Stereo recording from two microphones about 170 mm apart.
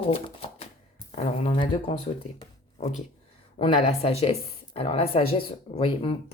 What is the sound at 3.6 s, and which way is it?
Speech, 35° left (ahead or behind).